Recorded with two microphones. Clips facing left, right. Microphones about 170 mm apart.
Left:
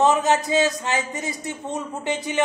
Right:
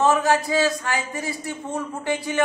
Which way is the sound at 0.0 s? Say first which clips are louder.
Even; 20° left (ahead or behind).